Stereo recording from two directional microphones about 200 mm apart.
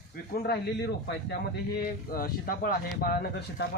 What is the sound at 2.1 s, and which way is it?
Speech, 45° left (ahead or behind).